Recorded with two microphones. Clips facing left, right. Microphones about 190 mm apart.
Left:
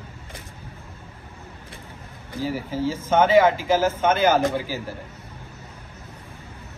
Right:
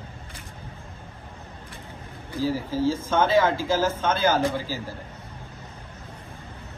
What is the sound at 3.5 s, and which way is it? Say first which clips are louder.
Speech: left 2 dB; 10° left (ahead or behind).